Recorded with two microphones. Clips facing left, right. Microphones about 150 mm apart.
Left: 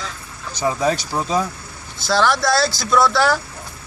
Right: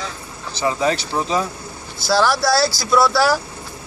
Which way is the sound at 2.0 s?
5° right (ahead or behind).